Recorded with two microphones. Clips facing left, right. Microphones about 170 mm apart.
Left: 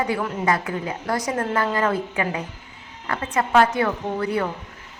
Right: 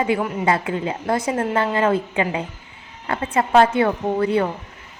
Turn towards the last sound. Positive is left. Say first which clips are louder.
# right 5 dB
turn(degrees=-25)  # may be behind; listen again after turning